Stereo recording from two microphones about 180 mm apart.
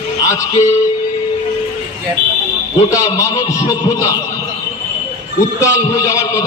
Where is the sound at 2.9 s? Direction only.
15° left (ahead or behind).